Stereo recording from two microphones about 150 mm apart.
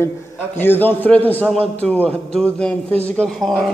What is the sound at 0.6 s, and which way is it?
Speech, 15° left (ahead or behind).